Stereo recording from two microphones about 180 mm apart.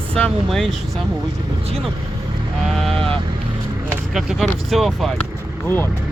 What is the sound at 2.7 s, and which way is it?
Vehicle, 5° left (ahead or behind).